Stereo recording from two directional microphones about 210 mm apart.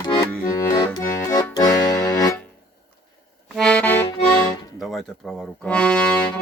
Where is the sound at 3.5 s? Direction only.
5° left (ahead or behind).